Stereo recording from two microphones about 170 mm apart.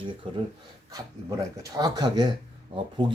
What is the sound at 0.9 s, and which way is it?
Speech, 20° right (ahead or behind).